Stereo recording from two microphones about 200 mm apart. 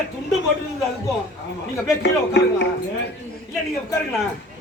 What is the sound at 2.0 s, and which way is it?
Speech, 60° left (ahead or behind).